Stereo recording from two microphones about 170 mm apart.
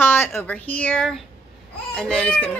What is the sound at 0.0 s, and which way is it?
A child's voice, 15° left (ahead or behind).